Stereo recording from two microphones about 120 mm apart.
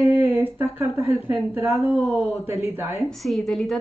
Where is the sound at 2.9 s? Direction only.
Centre (ahead or behind).